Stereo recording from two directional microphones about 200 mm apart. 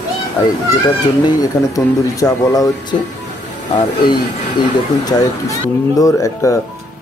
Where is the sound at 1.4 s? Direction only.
20° left (ahead or behind).